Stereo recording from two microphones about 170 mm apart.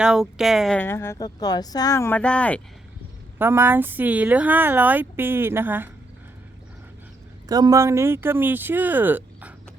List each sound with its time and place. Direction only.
0.0 s a woman's voice: 5° right (ahead or behind)
0.8 s speech: 15° left (ahead or behind)
3.3 s speech: 15° right (ahead or behind)
7.4 s speech: 20° right (ahead or behind)